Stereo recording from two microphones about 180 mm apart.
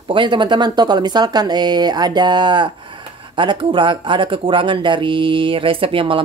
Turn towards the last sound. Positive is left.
turn(degrees=-30)  # may be behind; listen again after turning